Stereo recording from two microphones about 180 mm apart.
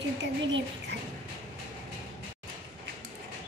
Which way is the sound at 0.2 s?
90° right.